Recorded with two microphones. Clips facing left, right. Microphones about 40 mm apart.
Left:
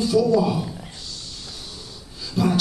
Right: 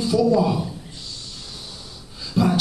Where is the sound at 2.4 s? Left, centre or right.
Centre.